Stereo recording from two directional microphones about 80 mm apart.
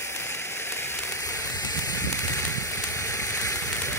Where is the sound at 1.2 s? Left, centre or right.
Left.